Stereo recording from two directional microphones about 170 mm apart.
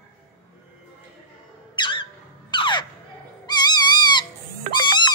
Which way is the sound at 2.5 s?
25° left (ahead or behind).